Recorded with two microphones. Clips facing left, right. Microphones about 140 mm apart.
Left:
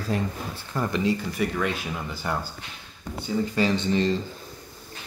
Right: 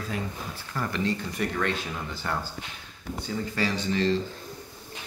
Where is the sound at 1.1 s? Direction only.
5° left (ahead or behind).